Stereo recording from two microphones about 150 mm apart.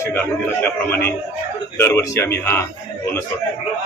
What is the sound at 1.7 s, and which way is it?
Speech, 15° left (ahead or behind).